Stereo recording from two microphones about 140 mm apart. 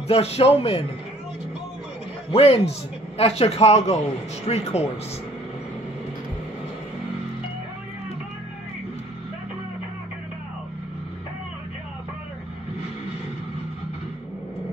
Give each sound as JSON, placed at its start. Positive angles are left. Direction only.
{"t": 0.1, "sound": "a man's voice", "side_deg": 45}
{"t": 2.3, "sound": "a man's voice", "side_deg": 45}